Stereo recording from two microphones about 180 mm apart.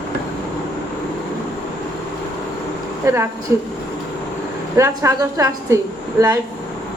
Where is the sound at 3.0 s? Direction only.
15° right (ahead or behind).